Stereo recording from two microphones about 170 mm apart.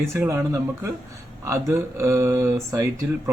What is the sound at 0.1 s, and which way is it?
Speech, 15° right (ahead or behind).